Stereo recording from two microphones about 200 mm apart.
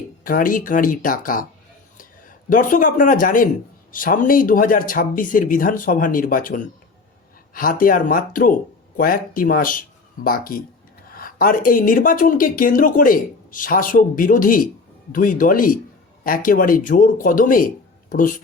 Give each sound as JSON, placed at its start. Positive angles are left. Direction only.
{"t": 0.3, "sound": "speech", "side_deg": 45}